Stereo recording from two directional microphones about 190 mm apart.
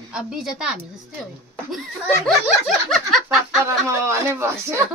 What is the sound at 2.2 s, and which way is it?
Snicker, 5° left (ahead or behind).